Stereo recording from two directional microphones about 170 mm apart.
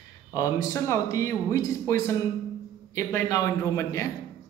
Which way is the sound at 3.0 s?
20° left (ahead or behind).